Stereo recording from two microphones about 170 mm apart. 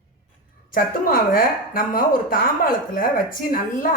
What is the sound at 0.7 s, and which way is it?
A woman's voice, 55° left (ahead or behind).